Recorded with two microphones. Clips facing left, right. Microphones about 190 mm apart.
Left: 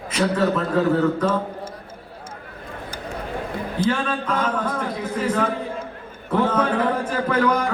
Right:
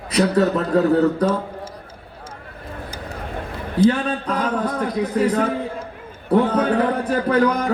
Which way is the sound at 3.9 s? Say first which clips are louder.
Right 2 dB; 35° right (ahead or behind).